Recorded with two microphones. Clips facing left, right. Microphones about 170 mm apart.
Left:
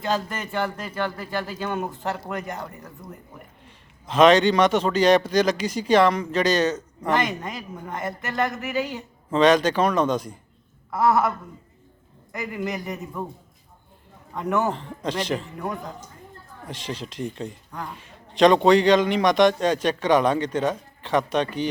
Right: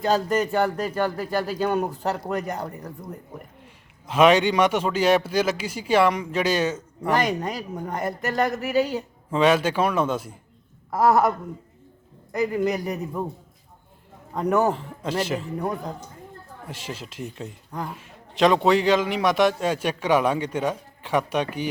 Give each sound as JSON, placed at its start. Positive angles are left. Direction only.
{"t": 0.0, "sound": "speech", "side_deg": -40}
{"t": 4.0, "sound": "a man's voice", "side_deg": -10}
{"t": 7.1, "sound": "speech", "side_deg": -40}
{"t": 9.3, "sound": "a man's voice", "side_deg": -5}
{"t": 10.9, "sound": "speech", "side_deg": -40}
{"t": 14.3, "sound": "speech", "side_deg": -35}
{"t": 14.7, "sound": "a man's voice", "side_deg": -5}
{"t": 15.5, "sound": "speech", "side_deg": -35}
{"t": 16.6, "sound": "a man's voice", "side_deg": -5}